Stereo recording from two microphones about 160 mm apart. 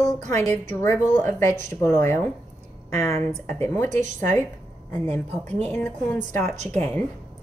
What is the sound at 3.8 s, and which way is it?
Speech, 50° right (ahead or behind).